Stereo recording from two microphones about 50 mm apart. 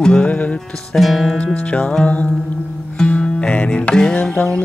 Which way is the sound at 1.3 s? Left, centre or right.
Left.